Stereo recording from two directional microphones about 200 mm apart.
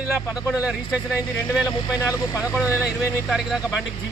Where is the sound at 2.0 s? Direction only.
15° left (ahead or behind).